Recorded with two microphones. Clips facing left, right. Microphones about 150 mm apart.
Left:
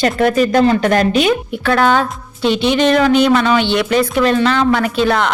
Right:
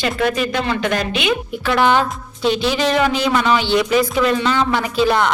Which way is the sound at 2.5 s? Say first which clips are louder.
Left 5 dB; 65° left (ahead or behind).